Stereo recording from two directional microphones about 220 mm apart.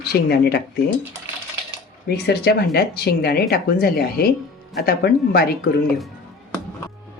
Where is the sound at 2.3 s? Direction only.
45° left (ahead or behind).